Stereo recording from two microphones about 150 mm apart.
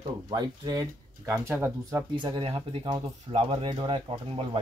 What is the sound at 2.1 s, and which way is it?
Speech, 35° right (ahead or behind).